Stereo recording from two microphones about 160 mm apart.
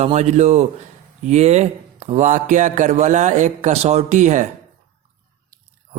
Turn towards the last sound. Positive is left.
turn(degrees=-50)  # may be behind; listen again after turning